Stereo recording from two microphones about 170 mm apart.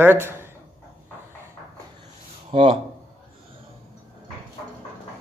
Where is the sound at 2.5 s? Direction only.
30° right (ahead or behind).